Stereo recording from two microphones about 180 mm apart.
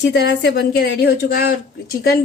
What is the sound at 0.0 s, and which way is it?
A woman's voice, 70° left (ahead or behind).